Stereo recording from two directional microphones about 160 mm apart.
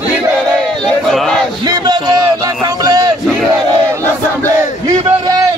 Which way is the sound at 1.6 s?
25° right (ahead or behind).